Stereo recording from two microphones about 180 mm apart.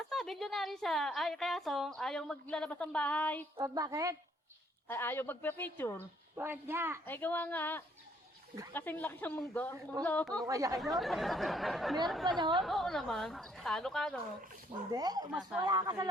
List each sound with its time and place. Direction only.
0.1 s a woman's voice: centre (ahead or behind)
3.6 s a woman's voice: 20° right (ahead or behind)
4.9 s speech: 10° left (ahead or behind)
6.3 s speech: 10° right (ahead or behind)
7.0 s speech: 10° left (ahead or behind)
10.4 s a woman's voice: 20° right (ahead or behind)
10.8 s a woman's voice: centre (ahead or behind)
14.8 s a woman's voice: 20° right (ahead or behind)
15.3 s a woman's voice: 5° right (ahead or behind)
15.6 s a woman's voice: 20° right (ahead or behind)